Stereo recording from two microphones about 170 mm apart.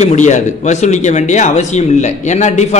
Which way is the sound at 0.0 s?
45° left (ahead or behind).